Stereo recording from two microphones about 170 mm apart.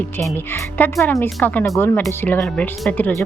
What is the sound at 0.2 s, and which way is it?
Speech, 15° left (ahead or behind).